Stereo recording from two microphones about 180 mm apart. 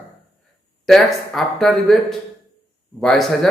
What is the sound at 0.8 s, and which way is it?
A man's voice, centre (ahead or behind).